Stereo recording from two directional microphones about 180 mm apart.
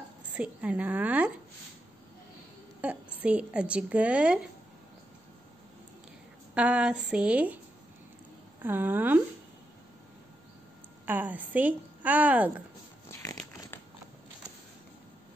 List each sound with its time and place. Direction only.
0.4 s speech: 10° right (ahead or behind)
2.8 s a woman's voice: 5° right (ahead or behind)
6.5 s speech: 5° right (ahead or behind)
8.6 s speech: 10° right (ahead or behind)
11.1 s speech: 10° right (ahead or behind)
13.1 s a sound: 20° left (ahead or behind)